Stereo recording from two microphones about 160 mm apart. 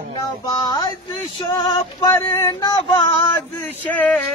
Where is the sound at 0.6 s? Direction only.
25° left (ahead or behind).